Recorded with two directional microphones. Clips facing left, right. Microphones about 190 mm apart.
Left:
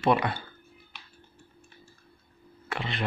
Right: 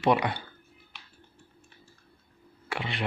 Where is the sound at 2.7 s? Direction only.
15° right (ahead or behind).